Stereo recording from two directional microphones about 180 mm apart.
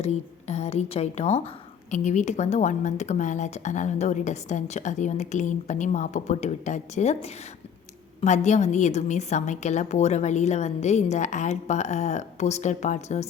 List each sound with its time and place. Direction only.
0.0 s a woman's voice: 40° left (ahead or behind)